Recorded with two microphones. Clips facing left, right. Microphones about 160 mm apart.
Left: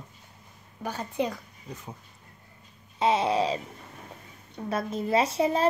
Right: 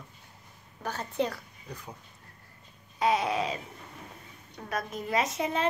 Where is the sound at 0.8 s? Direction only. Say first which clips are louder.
Left 1 dB; 10° left (ahead or behind).